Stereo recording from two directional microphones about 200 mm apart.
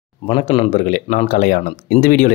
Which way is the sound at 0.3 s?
25° left (ahead or behind).